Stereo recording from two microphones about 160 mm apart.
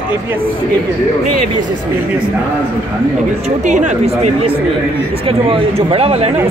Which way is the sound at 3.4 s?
50° right (ahead or behind).